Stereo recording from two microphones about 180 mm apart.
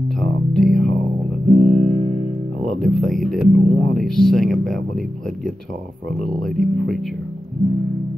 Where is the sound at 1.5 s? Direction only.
40° right (ahead or behind).